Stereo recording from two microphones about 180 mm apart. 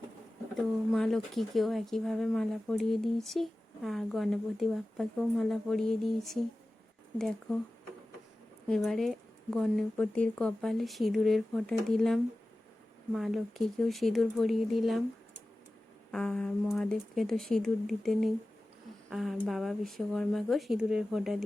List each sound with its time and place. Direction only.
0.9 s speech: centre (ahead or behind)
8.6 s speech: centre (ahead or behind)
16.1 s speech: 5° left (ahead or behind)